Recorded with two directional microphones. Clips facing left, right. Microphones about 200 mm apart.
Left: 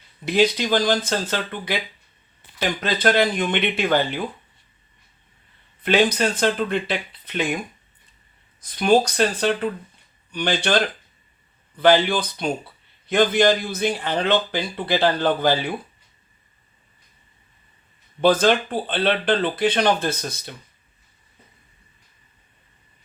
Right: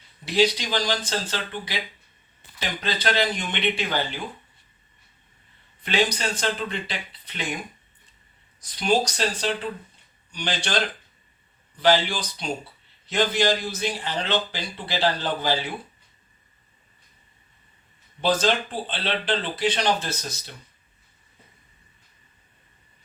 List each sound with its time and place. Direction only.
0.3 s speech: 55° left (ahead or behind)
5.8 s speech: 55° left (ahead or behind)
8.6 s speech: 55° left (ahead or behind)
18.2 s speech: 55° left (ahead or behind)